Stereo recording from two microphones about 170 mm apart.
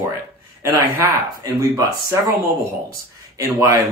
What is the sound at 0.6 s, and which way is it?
Speech, 20° right (ahead or behind).